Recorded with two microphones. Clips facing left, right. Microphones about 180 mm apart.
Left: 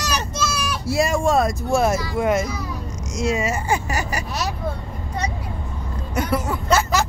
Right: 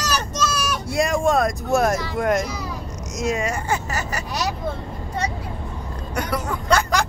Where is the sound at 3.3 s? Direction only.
5° left (ahead or behind).